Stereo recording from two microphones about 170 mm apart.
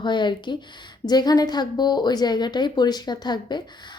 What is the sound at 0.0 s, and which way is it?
A woman's voice, 25° left (ahead or behind).